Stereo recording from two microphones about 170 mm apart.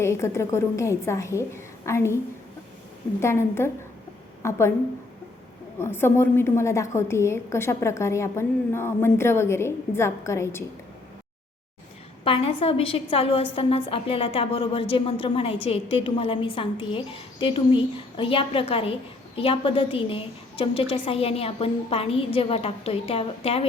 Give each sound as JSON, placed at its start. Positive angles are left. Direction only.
{"t": 0.0, "sound": "a woman's voice", "side_deg": 15}
{"t": 3.2, "sound": "a woman's voice", "side_deg": 15}
{"t": 5.8, "sound": "a woman's voice", "side_deg": 15}
{"t": 12.2, "sound": "a woman's voice", "side_deg": 35}